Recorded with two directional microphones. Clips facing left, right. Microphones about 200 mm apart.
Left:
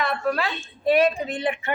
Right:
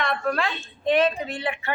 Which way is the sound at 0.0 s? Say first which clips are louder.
Left 1 dB; 5° left (ahead or behind).